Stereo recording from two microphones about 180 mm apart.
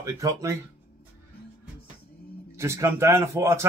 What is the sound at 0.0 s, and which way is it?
Speech, 20° right (ahead or behind).